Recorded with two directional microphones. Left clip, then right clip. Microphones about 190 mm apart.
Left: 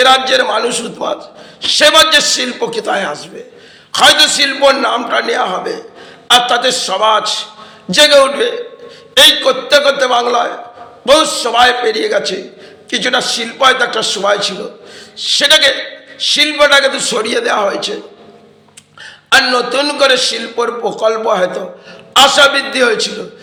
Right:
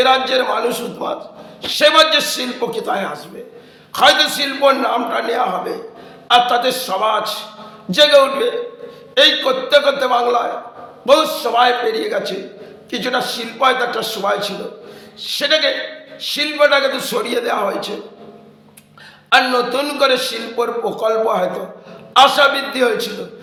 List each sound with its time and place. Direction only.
0.0 s a man's voice: 20° left (ahead or behind)
19.3 s a man's voice: 15° left (ahead or behind)